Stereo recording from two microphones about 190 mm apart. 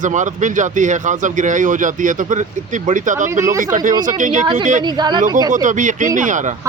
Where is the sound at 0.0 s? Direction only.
40° right (ahead or behind).